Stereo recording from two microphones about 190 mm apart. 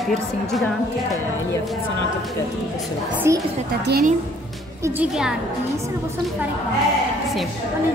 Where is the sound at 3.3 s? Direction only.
15° right (ahead or behind).